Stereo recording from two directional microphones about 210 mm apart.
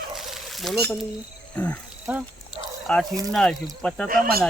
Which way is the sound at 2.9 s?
5° left (ahead or behind).